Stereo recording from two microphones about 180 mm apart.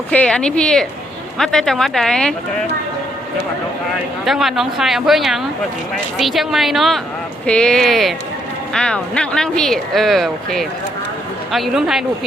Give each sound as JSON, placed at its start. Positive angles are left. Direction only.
{"t": 0.1, "sound": "speech", "side_deg": 5}
{"t": 4.3, "sound": "speech", "side_deg": 0}